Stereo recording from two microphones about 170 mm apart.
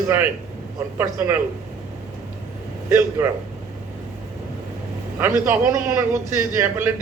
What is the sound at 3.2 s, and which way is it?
Speech, 15° right (ahead or behind).